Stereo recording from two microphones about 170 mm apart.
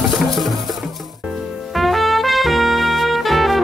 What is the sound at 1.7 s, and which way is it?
Trumpet, centre (ahead or behind).